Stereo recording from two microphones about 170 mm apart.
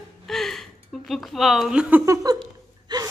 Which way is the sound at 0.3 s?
Centre (ahead or behind).